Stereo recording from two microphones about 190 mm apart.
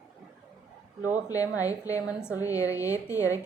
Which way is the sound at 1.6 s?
20° left (ahead or behind).